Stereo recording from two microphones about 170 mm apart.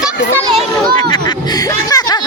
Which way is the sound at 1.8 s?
20° left (ahead or behind).